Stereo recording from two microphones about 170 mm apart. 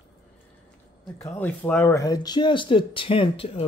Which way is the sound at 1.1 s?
5° left (ahead or behind).